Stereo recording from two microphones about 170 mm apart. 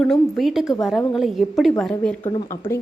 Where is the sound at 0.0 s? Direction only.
Centre (ahead or behind).